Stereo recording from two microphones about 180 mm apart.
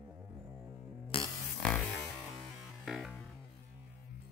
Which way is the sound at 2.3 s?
Centre (ahead or behind).